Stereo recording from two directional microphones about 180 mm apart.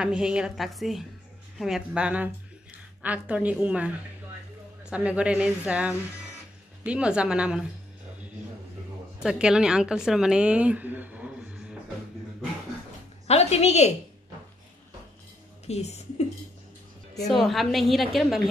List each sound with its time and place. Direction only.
0.0 s a woman's voice: 5° right (ahead or behind)
9.2 s a woman's voice: 5° right (ahead or behind)
13.3 s a woman's voice: 35° left (ahead or behind)
15.6 s speech: 35° left (ahead or behind)
17.3 s a woman's voice: centre (ahead or behind)